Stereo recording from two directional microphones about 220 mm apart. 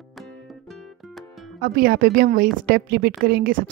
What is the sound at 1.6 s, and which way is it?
A woman's voice, 40° right (ahead or behind).